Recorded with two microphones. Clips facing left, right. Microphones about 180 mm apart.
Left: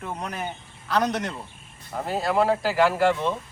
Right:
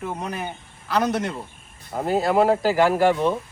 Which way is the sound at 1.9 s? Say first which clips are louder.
Right 4 dB; 35° right (ahead or behind).